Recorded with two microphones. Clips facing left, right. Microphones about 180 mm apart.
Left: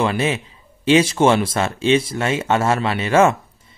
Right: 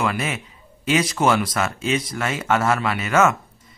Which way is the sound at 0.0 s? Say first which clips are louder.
Left 5 dB; 30° left (ahead or behind).